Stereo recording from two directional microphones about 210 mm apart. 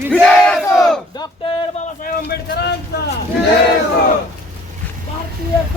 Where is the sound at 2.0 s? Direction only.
50° left (ahead or behind).